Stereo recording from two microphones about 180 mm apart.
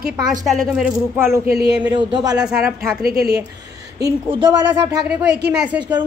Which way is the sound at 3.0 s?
60° right (ahead or behind).